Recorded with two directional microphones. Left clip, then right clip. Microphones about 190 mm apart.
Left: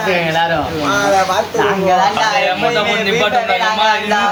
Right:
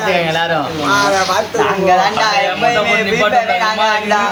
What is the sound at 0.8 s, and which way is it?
Speech, centre (ahead or behind).